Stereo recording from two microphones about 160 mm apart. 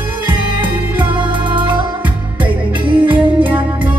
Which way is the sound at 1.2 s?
30° right (ahead or behind).